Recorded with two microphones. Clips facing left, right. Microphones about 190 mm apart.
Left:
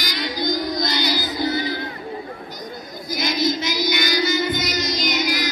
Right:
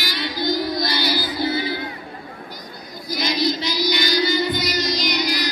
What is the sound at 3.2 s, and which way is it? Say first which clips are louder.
Chant: even; 50° left (ahead or behind).